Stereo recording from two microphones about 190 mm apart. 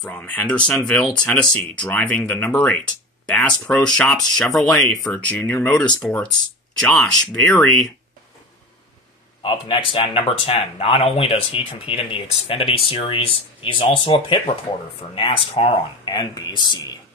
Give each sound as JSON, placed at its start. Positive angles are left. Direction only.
{"t": 0.0, "sound": "speech", "side_deg": 5}
{"t": 9.4, "sound": "speech", "side_deg": 25}